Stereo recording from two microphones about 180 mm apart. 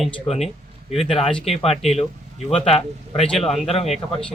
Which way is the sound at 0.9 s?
35° left (ahead or behind).